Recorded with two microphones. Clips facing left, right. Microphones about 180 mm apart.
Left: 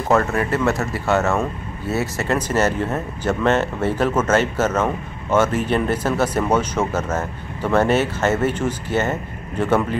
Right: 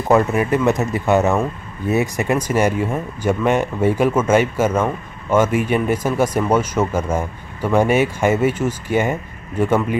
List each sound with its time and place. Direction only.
0.1 s speech: 15° right (ahead or behind)